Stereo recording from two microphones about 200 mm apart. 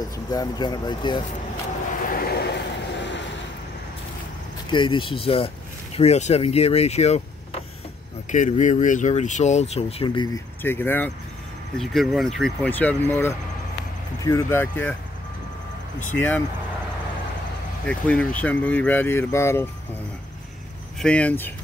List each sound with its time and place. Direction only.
0.3 s speech: 20° left (ahead or behind)
2.0 s vehicle: 45° left (ahead or behind); by 3.3 s 65° left (ahead or behind)
4.6 s speech: 25° left (ahead or behind)
16.0 s speech: 10° left (ahead or behind)
17.8 s speech: 5° left (ahead or behind)
21.0 s speech: 5° left (ahead or behind)